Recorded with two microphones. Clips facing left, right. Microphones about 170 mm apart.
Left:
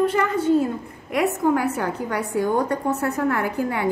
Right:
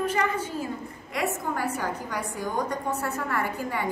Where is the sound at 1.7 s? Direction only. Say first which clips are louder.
Left 6 dB; 60° left (ahead or behind).